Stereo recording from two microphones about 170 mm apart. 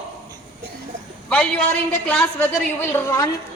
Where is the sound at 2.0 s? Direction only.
5° left (ahead or behind).